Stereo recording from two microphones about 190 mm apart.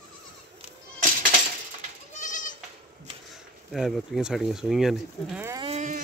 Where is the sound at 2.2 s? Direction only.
40° left (ahead or behind).